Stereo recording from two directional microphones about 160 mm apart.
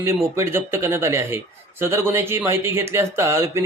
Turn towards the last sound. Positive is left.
turn(degrees=-15)  # may be behind; listen again after turning